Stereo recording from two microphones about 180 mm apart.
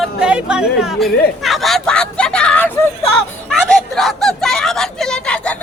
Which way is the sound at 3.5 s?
Centre (ahead or behind).